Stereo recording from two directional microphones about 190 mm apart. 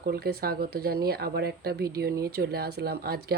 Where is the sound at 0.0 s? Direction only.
55° right (ahead or behind).